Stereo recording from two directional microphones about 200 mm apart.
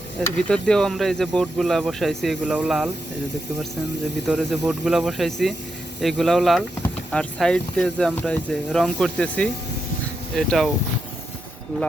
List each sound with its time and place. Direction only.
0.4 s speech: 5° left (ahead or behind)
4.3 s speech: 5° right (ahead or behind)